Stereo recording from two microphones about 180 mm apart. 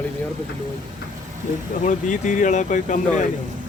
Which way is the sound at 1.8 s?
45° left (ahead or behind).